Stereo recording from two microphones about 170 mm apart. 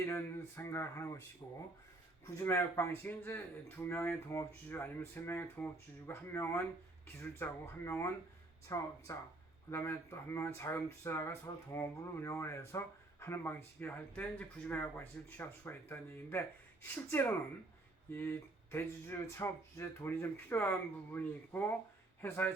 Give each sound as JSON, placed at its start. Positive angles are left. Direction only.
{"t": 0.0, "sound": "speech", "side_deg": 15}
{"t": 1.4, "sound": "speech", "side_deg": 25}